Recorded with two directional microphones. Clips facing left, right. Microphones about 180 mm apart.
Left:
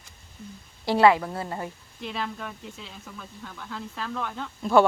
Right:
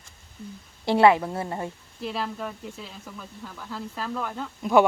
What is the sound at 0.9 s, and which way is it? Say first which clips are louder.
Speech: right 1 dB; 25° right (ahead or behind).